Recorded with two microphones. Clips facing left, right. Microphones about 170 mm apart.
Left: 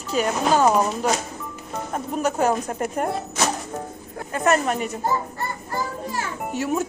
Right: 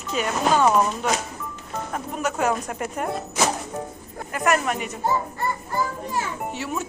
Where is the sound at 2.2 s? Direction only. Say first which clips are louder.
Left 2 dB; 30° left (ahead or behind).